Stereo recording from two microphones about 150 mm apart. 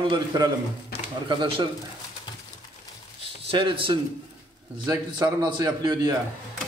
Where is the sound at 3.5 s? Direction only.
35° right (ahead or behind).